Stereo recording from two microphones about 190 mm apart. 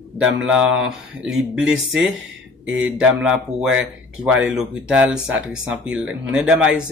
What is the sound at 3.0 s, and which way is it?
Speech, 5° right (ahead or behind).